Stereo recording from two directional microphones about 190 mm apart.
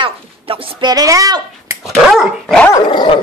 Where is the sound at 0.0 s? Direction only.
25° right (ahead or behind).